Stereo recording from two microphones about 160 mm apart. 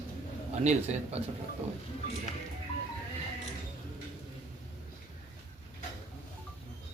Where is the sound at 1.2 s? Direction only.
40° right (ahead or behind).